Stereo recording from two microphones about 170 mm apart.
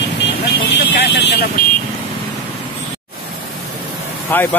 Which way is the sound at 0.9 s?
90° left.